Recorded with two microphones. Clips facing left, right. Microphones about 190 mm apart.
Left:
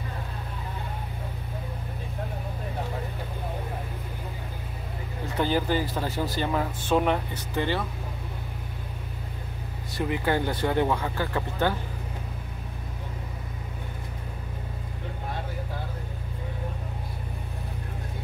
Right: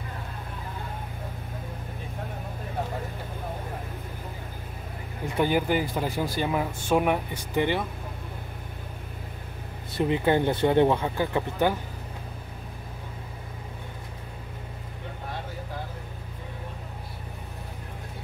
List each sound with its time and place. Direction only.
5.4 s speech: 15° right (ahead or behind)
9.9 s speech: 20° right (ahead or behind)